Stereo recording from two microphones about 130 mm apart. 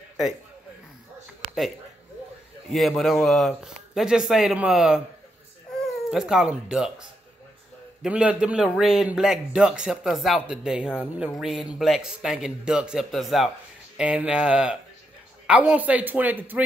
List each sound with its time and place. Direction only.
3.0 s speech: centre (ahead or behind)
8.0 s speech: 10° right (ahead or behind)